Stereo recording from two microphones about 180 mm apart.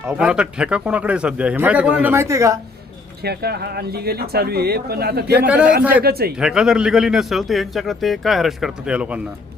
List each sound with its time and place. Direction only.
0.1 s a man's voice: 5° right (ahead or behind)
3.2 s speech: 60° right (ahead or behind)
5.5 s a man's voice: 5° right (ahead or behind)
6.0 s speech: 60° right (ahead or behind)
6.3 s a man's voice: 5° right (ahead or behind)